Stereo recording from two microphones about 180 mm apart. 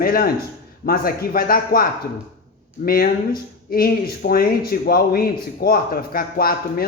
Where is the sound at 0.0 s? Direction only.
55° left (ahead or behind).